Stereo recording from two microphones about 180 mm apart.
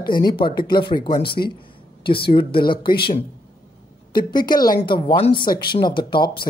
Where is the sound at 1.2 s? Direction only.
60° left (ahead or behind).